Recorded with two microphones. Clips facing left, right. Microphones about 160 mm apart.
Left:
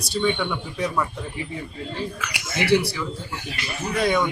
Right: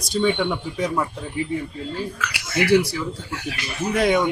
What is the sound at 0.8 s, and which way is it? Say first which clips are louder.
Speech: right 1 dB; 25° right (ahead or behind).